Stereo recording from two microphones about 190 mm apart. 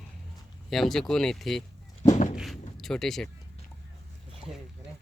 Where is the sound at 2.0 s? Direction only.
40° left (ahead or behind).